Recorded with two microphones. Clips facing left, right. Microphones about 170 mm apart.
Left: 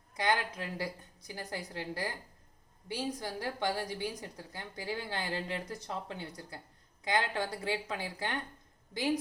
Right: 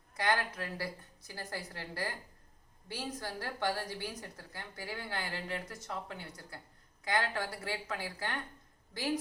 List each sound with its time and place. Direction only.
0.2 s a woman's voice: 15° left (ahead or behind)